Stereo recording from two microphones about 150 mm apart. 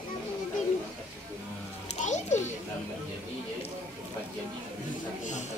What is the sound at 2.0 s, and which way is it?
Children playing, 50° left (ahead or behind).